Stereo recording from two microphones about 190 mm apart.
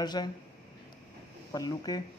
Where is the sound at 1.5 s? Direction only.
20° left (ahead or behind).